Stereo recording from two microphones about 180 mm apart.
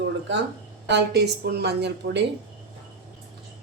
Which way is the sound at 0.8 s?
70° right (ahead or behind).